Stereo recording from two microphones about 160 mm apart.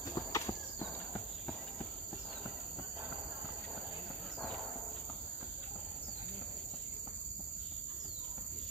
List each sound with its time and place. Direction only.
0.1 s clip-clop: 20° left (ahead or behind)